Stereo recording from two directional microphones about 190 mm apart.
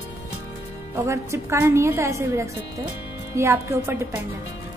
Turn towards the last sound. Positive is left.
turn(degrees=-10)  # may be behind; listen again after turning